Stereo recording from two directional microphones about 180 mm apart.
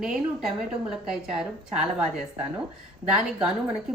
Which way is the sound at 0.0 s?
Centre (ahead or behind).